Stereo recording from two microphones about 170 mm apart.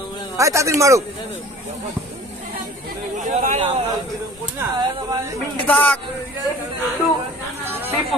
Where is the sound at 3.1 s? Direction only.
45° right (ahead or behind).